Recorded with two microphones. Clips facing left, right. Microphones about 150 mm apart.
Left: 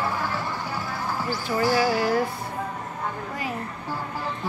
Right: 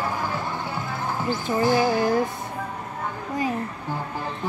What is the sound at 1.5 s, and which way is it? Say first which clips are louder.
Speech: right 1 dB; 20° right (ahead or behind).